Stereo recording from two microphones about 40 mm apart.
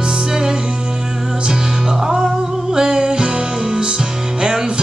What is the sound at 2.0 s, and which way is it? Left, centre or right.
Music, centre.